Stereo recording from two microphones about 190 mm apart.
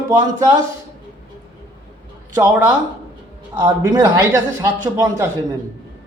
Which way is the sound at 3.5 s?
20° right (ahead or behind).